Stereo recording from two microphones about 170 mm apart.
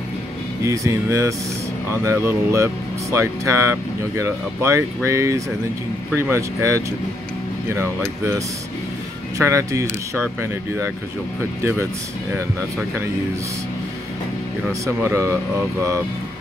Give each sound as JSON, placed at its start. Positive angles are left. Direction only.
{"t": 0.7, "sound": "speech", "side_deg": -15}
{"t": 9.4, "sound": "speech", "side_deg": -15}
{"t": 14.7, "sound": "speech", "side_deg": -15}